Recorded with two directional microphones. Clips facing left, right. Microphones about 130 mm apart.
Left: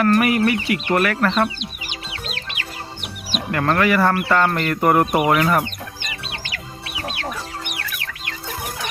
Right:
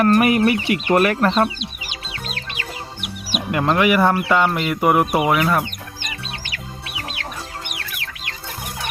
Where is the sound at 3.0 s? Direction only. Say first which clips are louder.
Right 1 dB; 10° right (ahead or behind).